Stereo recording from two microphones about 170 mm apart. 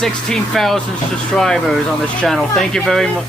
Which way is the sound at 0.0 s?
Centre (ahead or behind).